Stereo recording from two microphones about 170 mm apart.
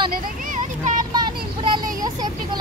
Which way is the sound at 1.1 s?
25° right (ahead or behind).